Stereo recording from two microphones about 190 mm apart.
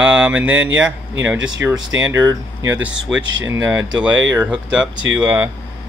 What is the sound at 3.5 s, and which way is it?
Speech, 10° right (ahead or behind).